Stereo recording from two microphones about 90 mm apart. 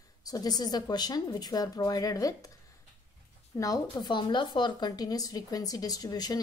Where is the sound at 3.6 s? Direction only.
45° left (ahead or behind).